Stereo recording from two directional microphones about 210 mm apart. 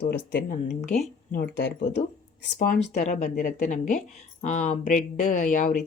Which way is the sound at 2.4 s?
50° left (ahead or behind).